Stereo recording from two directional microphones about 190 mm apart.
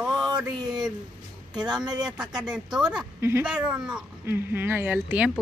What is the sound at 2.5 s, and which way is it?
A woman's voice, 5° right (ahead or behind).